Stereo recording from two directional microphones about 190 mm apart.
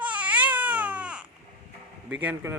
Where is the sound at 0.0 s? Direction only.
10° right (ahead or behind).